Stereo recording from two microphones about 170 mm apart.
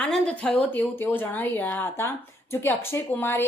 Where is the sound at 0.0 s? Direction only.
5° left (ahead or behind).